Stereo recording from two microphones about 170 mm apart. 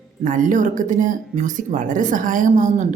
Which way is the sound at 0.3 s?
50° right (ahead or behind).